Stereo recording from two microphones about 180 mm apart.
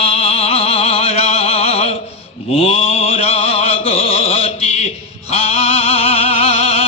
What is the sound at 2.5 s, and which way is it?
Mantra, 35° left (ahead or behind).